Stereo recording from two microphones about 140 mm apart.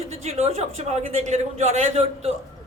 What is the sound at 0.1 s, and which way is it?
A woman's voice, 50° right (ahead or behind).